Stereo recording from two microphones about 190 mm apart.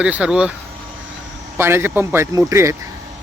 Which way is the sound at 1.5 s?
10° right (ahead or behind).